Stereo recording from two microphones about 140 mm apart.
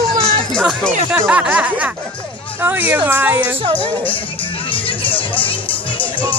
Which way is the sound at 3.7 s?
40° left (ahead or behind).